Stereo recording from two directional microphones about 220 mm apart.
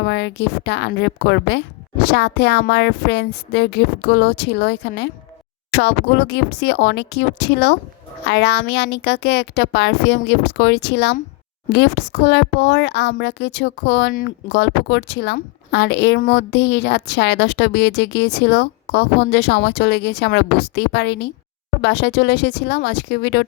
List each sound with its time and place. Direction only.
0.0 s a child's voice: 50° left (ahead or behind)